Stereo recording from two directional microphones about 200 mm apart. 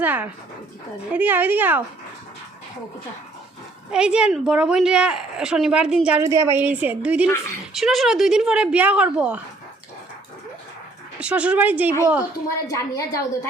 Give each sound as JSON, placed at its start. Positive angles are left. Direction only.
{"t": 0.0, "sound": "a woman's voice", "side_deg": -10}
{"t": 3.9, "sound": "speech", "side_deg": -5}
{"t": 6.2, "sound": "a woman's voice", "side_deg": -15}
{"t": 11.2, "sound": "a woman's voice", "side_deg": -5}
{"t": 12.5, "sound": "a woman's voice", "side_deg": 15}